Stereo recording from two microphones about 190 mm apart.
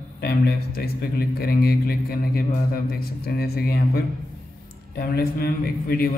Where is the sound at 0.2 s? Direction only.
55° left (ahead or behind).